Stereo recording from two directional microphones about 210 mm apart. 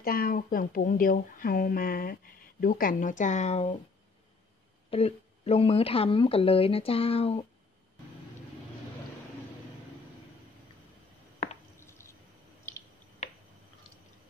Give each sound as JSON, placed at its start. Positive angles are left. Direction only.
{"t": 0.0, "sound": "speech", "side_deg": 45}
{"t": 4.9, "sound": "speech", "side_deg": 30}
{"t": 11.8, "sound": "drip", "side_deg": 10}